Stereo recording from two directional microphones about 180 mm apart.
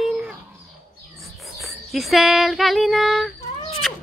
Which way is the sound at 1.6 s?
Centre (ahead or behind).